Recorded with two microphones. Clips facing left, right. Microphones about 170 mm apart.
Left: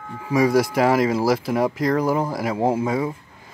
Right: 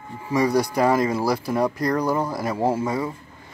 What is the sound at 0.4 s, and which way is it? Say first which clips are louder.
Speech: left 2 dB; 90° left.